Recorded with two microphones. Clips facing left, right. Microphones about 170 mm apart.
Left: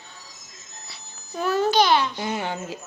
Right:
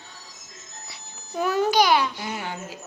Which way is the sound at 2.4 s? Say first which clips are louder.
Left 4 dB; 25° left (ahead or behind).